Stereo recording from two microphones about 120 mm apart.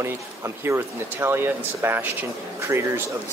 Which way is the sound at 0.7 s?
20° right (ahead or behind).